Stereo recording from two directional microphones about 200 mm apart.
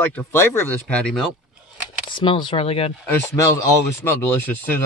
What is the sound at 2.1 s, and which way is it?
Speech, 25° left (ahead or behind).